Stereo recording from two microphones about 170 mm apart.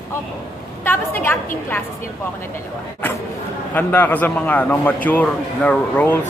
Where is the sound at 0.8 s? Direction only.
10° left (ahead or behind).